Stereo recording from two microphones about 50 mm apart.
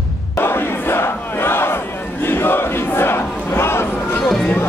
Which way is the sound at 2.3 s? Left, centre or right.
Left.